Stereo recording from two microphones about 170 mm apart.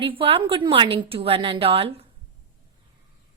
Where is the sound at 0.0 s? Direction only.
30° right (ahead or behind).